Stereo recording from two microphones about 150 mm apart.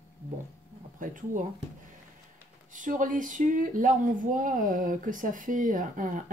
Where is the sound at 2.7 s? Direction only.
60° right (ahead or behind).